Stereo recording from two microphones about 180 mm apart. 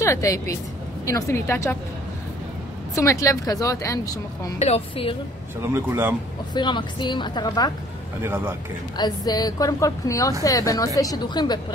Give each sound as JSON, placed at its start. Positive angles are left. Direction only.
{"t": 0.0, "sound": "a woman's voice", "side_deg": 15}
{"t": 2.9, "sound": "a woman's voice", "side_deg": 15}
{"t": 4.6, "sound": "a woman's voice", "side_deg": 35}
{"t": 5.6, "sound": "a man's voice", "side_deg": -15}
{"t": 6.5, "sound": "a woman's voice", "side_deg": 25}
{"t": 8.2, "sound": "a man's voice", "side_deg": -15}
{"t": 8.9, "sound": "a woman's voice", "side_deg": 20}